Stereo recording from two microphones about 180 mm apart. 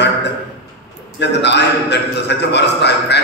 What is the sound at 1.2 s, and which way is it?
A man's voice, 70° left (ahead or behind).